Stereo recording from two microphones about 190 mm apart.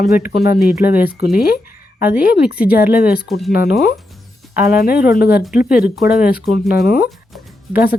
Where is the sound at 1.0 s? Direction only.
50° left (ahead or behind).